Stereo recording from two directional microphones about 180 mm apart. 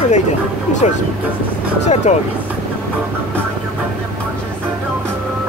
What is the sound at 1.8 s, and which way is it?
Vehicle, 40° left (ahead or behind).